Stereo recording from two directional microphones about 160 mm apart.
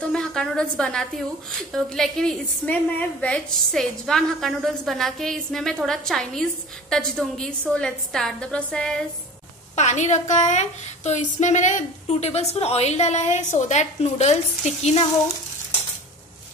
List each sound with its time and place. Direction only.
0.1 s a woman's voice: 5° left (ahead or behind)
9.8 s a woman's voice: 45° left (ahead or behind)